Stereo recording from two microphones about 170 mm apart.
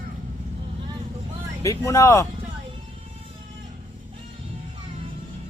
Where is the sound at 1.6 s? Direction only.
20° left (ahead or behind).